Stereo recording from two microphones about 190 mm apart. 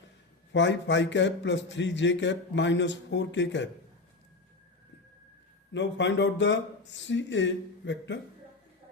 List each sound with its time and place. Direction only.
0.5 s speech: 70° left (ahead or behind)
5.7 s speech: 70° left (ahead or behind)